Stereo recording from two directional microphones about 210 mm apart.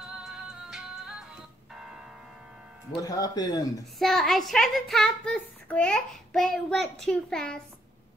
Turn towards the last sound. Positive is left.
turn(degrees=5)  # may be behind; listen again after turning